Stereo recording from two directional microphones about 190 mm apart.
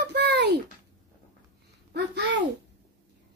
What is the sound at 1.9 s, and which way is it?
Babbling, 65° right (ahead or behind).